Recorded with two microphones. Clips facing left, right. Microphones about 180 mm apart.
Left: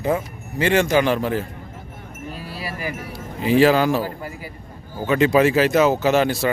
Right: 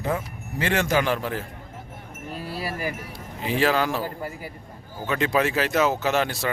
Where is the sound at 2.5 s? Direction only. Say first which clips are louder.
Right 1 dB; 45° right (ahead or behind).